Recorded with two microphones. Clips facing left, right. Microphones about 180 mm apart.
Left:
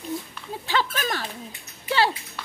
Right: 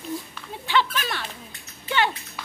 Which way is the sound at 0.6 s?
40° left (ahead or behind).